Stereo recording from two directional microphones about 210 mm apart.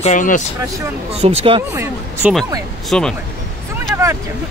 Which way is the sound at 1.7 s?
10° right (ahead or behind).